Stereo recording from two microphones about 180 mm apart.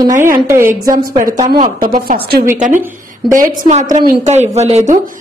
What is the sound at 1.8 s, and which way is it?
Speech, 50° right (ahead or behind).